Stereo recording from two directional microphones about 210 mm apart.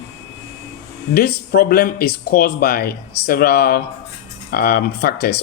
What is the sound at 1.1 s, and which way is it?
Speech, 45° left (ahead or behind).